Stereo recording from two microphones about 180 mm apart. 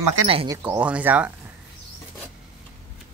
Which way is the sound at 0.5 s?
20° right (ahead or behind).